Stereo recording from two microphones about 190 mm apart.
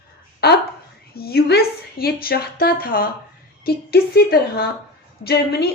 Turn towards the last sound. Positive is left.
turn(degrees=55)  # may be behind; listen again after turning